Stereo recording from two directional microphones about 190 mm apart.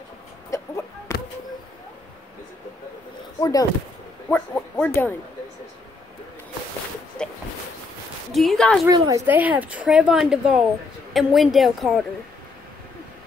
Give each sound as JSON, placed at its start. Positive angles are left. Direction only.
{"t": 0.5, "sound": "a sound", "side_deg": 15}
{"t": 3.3, "sound": "speech", "side_deg": 20}
{"t": 4.3, "sound": "speech", "side_deg": 10}
{"t": 8.3, "sound": "a woman's voice", "side_deg": 0}
{"t": 8.8, "sound": "a woman's voice", "side_deg": -15}